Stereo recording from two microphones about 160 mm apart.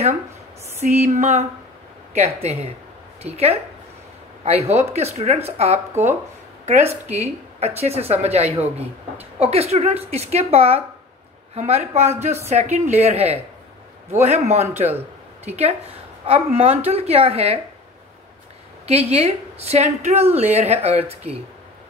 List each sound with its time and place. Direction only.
0.7 s a woman's voice: 45° right (ahead or behind)
18.9 s speech: 40° right (ahead or behind)